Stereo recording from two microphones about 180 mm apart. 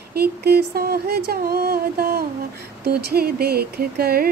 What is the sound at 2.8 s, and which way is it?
Speech, 60° right (ahead or behind).